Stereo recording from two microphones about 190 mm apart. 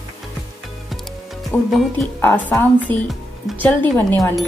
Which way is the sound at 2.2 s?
10° left (ahead or behind).